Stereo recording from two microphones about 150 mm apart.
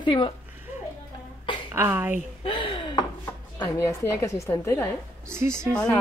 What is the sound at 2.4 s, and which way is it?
Gasp, 35° left (ahead or behind).